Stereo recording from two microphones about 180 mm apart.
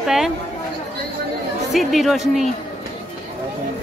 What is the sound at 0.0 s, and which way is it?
Chatter, centre (ahead or behind).